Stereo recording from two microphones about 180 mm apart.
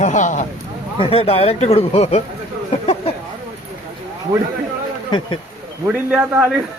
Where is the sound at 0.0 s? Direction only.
45° left (ahead or behind).